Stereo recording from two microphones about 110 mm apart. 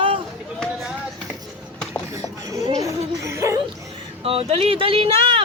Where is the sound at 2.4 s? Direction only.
30° right (ahead or behind).